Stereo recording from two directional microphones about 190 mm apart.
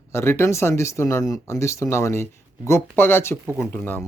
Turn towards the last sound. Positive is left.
turn(degrees=10)  # may be behind; listen again after turning